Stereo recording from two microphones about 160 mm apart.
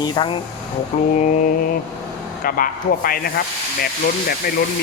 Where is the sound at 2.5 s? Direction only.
60° left (ahead or behind).